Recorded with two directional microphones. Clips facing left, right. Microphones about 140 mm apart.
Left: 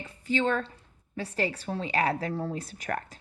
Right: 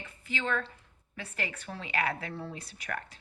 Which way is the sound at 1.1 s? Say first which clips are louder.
Left 8 dB; 35° left (ahead or behind).